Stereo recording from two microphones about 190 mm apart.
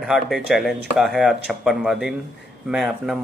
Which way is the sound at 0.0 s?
Centre (ahead or behind).